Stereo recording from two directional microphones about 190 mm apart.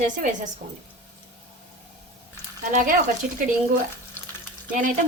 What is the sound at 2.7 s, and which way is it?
Speech, 45° right (ahead or behind).